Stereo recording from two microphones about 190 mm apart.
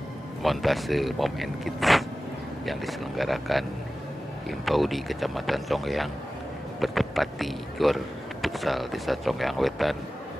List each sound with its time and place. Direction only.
0.4 s speech: centre (ahead or behind)